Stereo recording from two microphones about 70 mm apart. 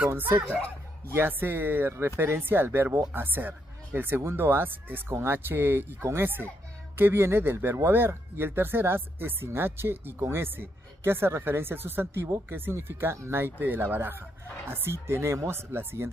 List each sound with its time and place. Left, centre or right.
0.1 s speech: right